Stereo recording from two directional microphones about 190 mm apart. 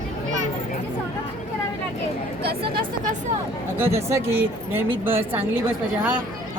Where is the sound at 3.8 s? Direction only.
15° right (ahead or behind).